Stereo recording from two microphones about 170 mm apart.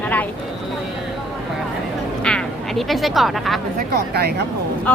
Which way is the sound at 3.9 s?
70° right (ahead or behind).